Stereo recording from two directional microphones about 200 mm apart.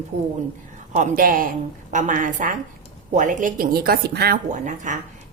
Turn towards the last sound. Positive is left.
turn(degrees=-40)  # may be behind; listen again after turning